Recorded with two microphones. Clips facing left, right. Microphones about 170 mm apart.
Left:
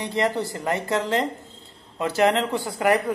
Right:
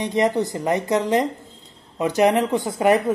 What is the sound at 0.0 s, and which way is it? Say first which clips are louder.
Speech: right 4 dB; 20° right (ahead or behind).